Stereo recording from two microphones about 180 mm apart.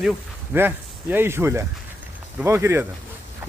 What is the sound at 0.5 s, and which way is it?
Speech, 10° right (ahead or behind).